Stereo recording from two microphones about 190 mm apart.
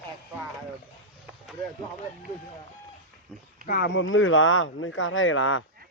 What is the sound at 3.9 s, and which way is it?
Speech, 85° left.